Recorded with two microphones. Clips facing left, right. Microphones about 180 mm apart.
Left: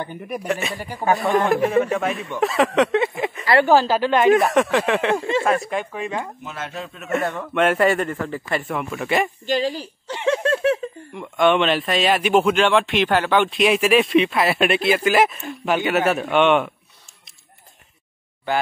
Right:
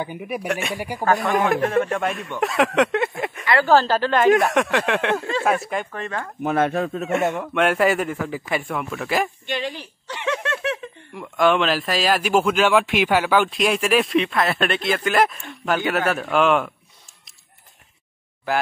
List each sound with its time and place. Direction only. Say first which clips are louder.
0.0 s a woman's voice: right 1 dB; 5° right (ahead or behind); by 6.3 s 15° left (ahead or behind)
6.4 s speech: right 11 dB; 55° right (ahead or behind)
7.5 s speech: left 2 dB; centre (ahead or behind)
9.5 s a sound: left 6 dB; 35° left (ahead or behind)
11.2 s speech: left 1 dB; centre (ahead or behind)